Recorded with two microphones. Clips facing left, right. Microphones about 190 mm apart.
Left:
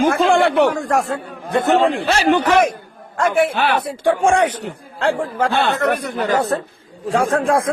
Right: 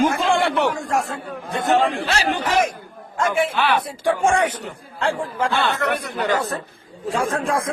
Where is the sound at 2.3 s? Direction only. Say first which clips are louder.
Left 8 dB; 65° left (ahead or behind); by 3.8 s 45° left (ahead or behind).